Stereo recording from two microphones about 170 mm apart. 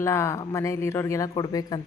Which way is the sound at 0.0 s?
15° left (ahead or behind).